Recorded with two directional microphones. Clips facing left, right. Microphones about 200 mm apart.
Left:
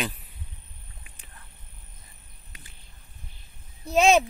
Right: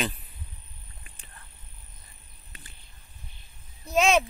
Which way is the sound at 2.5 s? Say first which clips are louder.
Right 1 dB; 10° left (ahead or behind).